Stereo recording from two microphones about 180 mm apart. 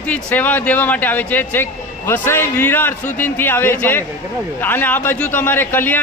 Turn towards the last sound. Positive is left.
turn(degrees=10)  # may be behind; listen again after turning